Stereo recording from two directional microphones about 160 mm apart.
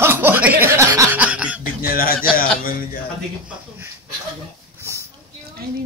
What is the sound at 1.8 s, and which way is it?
A man's voice, 65° left (ahead or behind).